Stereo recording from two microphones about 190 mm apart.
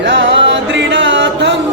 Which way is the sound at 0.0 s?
70° right (ahead or behind).